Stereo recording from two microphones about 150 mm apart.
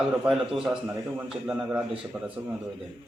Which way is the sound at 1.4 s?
10° right (ahead or behind).